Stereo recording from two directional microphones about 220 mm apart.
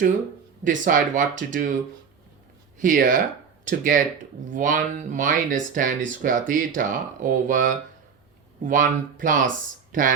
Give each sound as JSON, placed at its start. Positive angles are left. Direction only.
{"t": 0.6, "sound": "speech", "side_deg": -35}
{"t": 2.7, "sound": "speech", "side_deg": -35}